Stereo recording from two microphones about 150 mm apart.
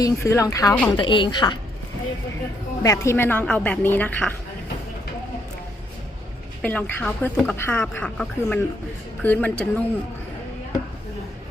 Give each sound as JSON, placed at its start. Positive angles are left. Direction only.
{"t": 0.0, "sound": "speech", "side_deg": 20}
{"t": 0.9, "sound": "a woman's voice", "side_deg": 35}
{"t": 2.8, "sound": "a woman's voice", "side_deg": 20}
{"t": 6.6, "sound": "a woman's voice", "side_deg": 10}